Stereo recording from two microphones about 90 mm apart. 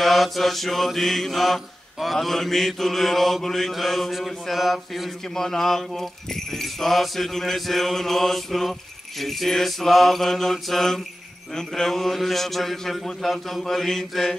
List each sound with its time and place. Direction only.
0.0 s mantra: centre (ahead or behind)